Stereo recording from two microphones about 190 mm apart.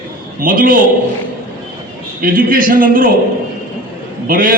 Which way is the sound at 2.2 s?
50° right (ahead or behind).